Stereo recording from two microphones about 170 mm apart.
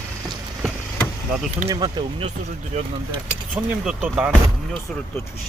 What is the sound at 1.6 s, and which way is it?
Speech, 25° right (ahead or behind).